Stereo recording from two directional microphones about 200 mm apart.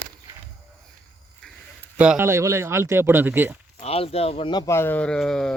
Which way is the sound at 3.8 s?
30° left (ahead or behind).